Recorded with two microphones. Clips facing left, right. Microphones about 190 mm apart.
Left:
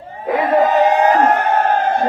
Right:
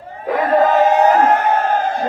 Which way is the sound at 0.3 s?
10° left (ahead or behind).